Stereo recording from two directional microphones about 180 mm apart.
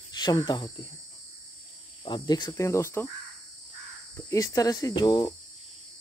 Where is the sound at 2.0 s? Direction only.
25° left (ahead or behind).